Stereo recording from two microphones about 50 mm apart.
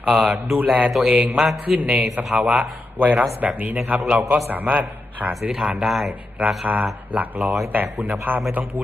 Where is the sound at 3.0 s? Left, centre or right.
Right.